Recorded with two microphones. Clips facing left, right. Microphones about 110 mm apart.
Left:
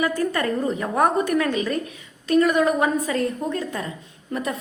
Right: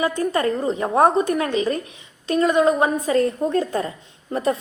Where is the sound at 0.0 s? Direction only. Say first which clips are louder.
Right 2 dB; 25° right (ahead or behind).